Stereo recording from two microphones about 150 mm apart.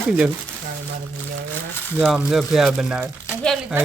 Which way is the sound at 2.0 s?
Centre (ahead or behind).